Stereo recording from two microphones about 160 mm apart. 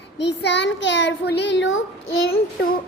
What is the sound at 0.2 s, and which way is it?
Child singing, 90° left.